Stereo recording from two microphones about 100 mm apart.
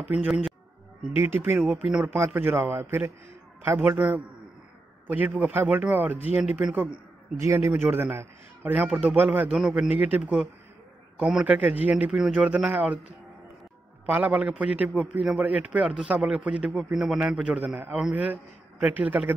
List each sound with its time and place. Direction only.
1.1 s a man's voice: 20° right (ahead or behind)
2.1 s a man's voice: 25° right (ahead or behind)
7.3 s a man's voice: 30° right (ahead or behind)
9.5 s a man's voice: 10° right (ahead or behind)
14.0 s a man's voice: 20° right (ahead or behind)